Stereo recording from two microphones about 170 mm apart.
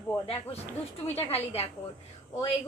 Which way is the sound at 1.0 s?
35° left (ahead or behind).